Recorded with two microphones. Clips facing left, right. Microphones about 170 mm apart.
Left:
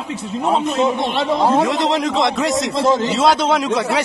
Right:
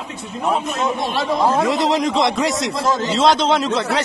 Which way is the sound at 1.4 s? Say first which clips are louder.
Left 2 dB; 30° left (ahead or behind).